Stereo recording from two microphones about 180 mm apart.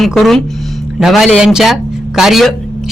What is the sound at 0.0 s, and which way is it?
Speech, centre (ahead or behind).